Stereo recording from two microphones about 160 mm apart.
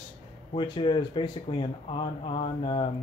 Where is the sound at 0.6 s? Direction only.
30° left (ahead or behind).